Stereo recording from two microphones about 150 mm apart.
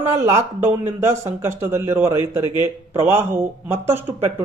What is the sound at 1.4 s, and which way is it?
Speech, 15° right (ahead or behind).